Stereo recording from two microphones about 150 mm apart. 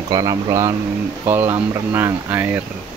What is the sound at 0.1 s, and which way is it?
Speech, 25° right (ahead or behind).